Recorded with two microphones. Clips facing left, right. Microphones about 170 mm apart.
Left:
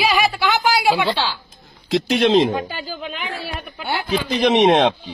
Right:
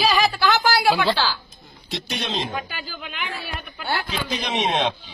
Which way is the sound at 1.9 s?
90° left.